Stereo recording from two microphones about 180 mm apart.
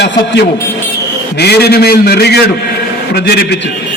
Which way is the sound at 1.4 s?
65° left (ahead or behind).